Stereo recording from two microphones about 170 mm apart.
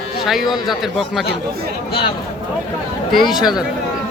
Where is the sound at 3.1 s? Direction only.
Centre (ahead or behind).